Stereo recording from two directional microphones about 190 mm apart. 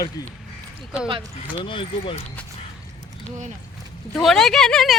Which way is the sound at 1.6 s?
25° left (ahead or behind).